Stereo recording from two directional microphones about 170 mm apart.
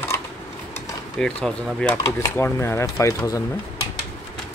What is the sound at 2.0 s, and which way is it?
Speech, 20° left (ahead or behind).